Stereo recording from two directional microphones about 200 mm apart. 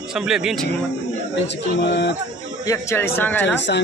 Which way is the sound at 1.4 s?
60° left (ahead or behind).